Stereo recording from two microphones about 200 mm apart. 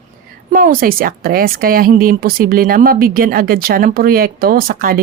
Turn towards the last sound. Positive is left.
turn(degrees=-45)  # may be behind; listen again after turning